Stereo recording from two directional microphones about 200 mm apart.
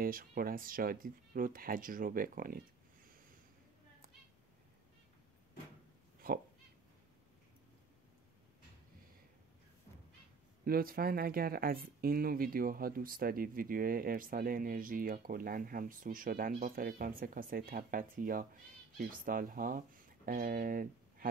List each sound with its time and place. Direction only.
0.0 s speech: 45° right (ahead or behind)
6.2 s speech: 50° right (ahead or behind)
10.6 s speech: 45° right (ahead or behind)